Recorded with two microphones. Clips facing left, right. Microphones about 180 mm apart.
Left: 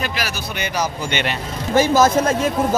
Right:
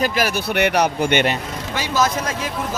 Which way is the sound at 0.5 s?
65° right (ahead or behind).